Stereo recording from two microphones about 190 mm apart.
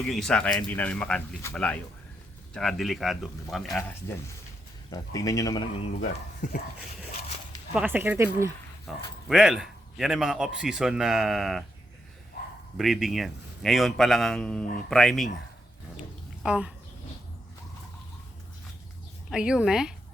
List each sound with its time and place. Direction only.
0.0 s a man's voice: centre (ahead or behind)
4.9 s speech: 20° left (ahead or behind)
6.0 s speech: 45° left (ahead or behind)
7.7 s speech: 10° right (ahead or behind)
8.9 s a man's voice: centre (ahead or behind)
12.7 s a man's voice: centre (ahead or behind)
16.4 s a man's voice: 5° right (ahead or behind)
19.3 s a man's voice: 5° right (ahead or behind)